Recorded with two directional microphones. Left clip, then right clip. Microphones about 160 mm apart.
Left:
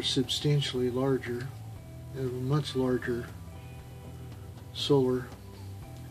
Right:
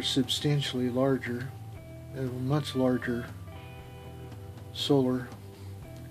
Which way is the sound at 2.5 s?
40° right (ahead or behind).